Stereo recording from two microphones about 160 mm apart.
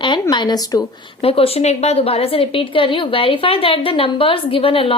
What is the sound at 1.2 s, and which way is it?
A woman's voice, 35° left (ahead or behind).